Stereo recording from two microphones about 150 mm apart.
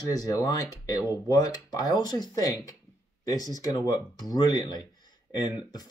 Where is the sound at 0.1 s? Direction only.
25° left (ahead or behind).